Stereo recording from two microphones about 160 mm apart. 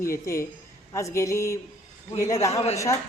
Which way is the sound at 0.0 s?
15° left (ahead or behind).